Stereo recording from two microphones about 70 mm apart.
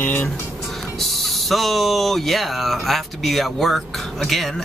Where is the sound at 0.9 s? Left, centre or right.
Centre.